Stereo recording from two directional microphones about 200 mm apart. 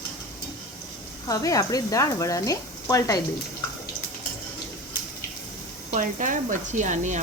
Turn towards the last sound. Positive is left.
turn(degrees=-35)  # may be behind; listen again after turning